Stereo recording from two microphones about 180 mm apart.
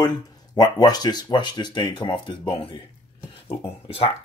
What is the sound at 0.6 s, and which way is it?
Speech, 20° left (ahead or behind).